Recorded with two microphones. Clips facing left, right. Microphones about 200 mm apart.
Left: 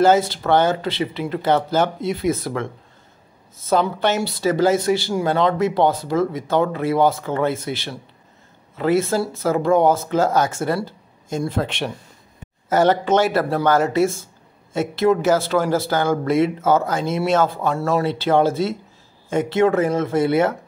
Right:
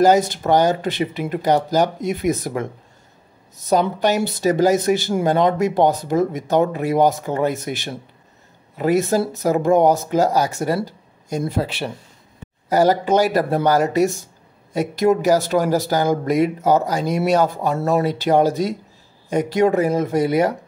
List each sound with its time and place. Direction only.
0.0 s speech: 15° right (ahead or behind)
13.8 s speech: 40° right (ahead or behind)
15.0 s speech: 15° right (ahead or behind)